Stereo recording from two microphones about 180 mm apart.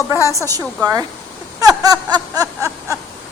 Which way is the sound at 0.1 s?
15° right (ahead or behind).